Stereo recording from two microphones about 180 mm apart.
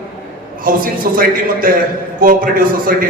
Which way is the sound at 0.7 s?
50° right (ahead or behind).